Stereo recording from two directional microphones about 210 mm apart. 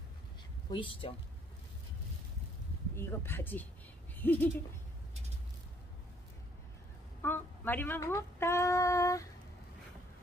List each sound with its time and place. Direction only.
0.7 s speech: 25° left (ahead or behind)
3.0 s speech: 10° left (ahead or behind)
4.1 s bird: 10° left (ahead or behind)
7.2 s speech: 10° left (ahead or behind)